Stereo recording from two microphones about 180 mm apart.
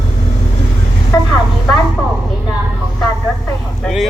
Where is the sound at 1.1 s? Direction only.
20° left (ahead or behind).